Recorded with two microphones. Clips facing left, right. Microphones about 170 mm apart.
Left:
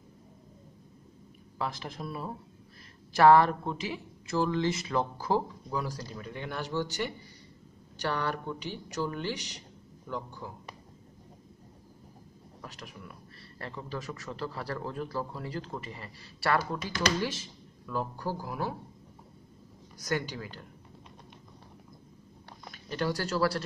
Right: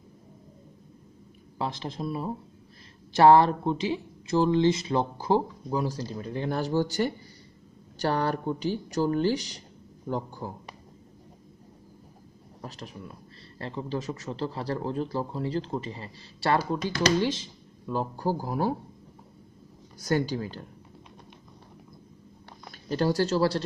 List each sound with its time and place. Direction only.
1.6 s speech: 25° right (ahead or behind); by 10.5 s 40° right (ahead or behind)
12.6 s speech: 30° right (ahead or behind)
20.0 s speech: 30° right (ahead or behind)
22.7 s speech: 35° right (ahead or behind)